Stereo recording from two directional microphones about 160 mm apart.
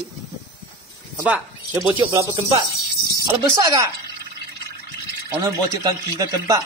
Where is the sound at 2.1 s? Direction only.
25° right (ahead or behind).